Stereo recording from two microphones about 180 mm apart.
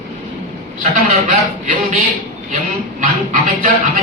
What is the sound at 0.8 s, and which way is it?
Speech, 45° right (ahead or behind).